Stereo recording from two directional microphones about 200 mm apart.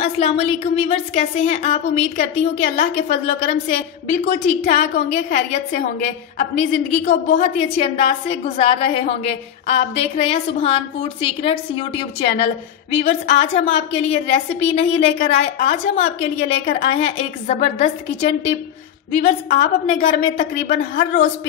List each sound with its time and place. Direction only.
0.0 s a woman's voice: 30° left (ahead or behind)
19.1 s a woman's voice: 40° left (ahead or behind)